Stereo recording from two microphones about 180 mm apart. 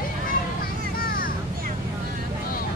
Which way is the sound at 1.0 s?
50° left (ahead or behind).